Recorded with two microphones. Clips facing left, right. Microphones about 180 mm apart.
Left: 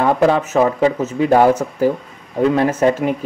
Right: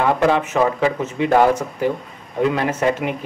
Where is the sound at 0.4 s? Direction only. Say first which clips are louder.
Left 3 dB; 40° left (ahead or behind).